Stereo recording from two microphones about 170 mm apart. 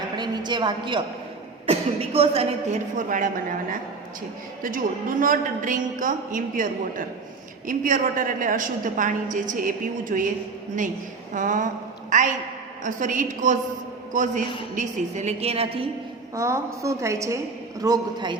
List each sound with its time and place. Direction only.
0.2 s a woman's voice: 25° right (ahead or behind)
3.1 s a woman's voice: 55° right (ahead or behind)
7.7 s a woman's voice: 50° right (ahead or behind)
11.3 s a woman's voice: 50° right (ahead or behind)
16.3 s a woman's voice: 15° right (ahead or behind)